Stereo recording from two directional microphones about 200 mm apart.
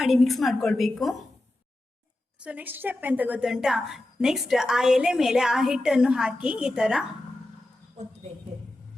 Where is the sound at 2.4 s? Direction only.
10° right (ahead or behind).